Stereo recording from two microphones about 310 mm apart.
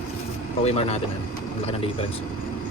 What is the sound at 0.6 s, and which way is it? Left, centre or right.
Speech, centre.